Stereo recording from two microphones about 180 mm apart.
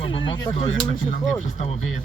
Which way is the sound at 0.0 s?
30° left (ahead or behind).